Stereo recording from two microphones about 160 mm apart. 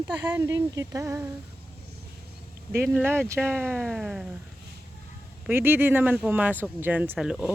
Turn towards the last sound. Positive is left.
turn(degrees=0)  # may be behind; listen again after turning